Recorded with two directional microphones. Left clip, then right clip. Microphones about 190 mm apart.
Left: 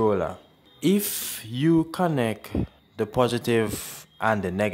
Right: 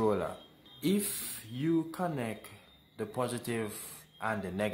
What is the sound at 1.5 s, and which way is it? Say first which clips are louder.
Speech: left 10 dB; 50° left (ahead or behind).